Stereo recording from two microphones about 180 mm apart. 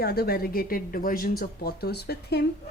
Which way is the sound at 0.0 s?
60° left (ahead or behind).